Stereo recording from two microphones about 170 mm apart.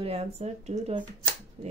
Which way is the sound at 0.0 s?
35° right (ahead or behind).